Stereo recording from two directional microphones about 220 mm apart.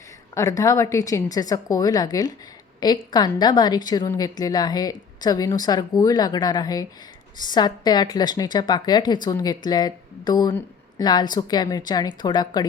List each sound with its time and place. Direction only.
0.3 s a woman's voice: 15° left (ahead or behind)